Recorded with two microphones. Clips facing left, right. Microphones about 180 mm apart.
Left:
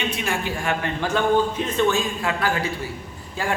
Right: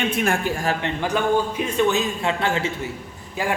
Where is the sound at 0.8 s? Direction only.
15° right (ahead or behind).